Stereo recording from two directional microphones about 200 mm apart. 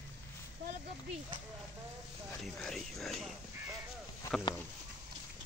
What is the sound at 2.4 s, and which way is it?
Speech, centre (ahead or behind).